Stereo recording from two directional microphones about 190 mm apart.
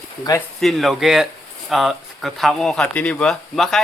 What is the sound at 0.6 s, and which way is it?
Speech, centre (ahead or behind).